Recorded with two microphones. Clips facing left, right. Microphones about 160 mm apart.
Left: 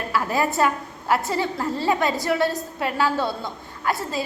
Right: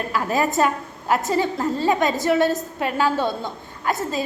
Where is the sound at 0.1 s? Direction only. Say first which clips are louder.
Even; 20° right (ahead or behind).